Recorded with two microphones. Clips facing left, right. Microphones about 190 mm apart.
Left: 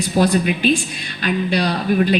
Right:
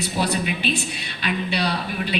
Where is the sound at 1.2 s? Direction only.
40° left (ahead or behind).